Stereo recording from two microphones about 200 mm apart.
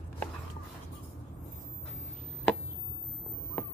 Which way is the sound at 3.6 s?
10° left (ahead or behind).